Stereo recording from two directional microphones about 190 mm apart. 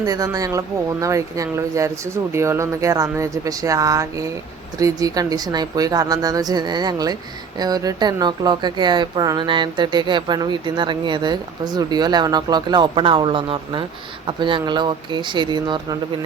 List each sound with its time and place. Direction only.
0.0 s speech: 20° right (ahead or behind)